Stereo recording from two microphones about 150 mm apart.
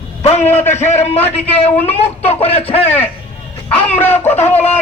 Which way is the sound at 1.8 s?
40° left (ahead or behind).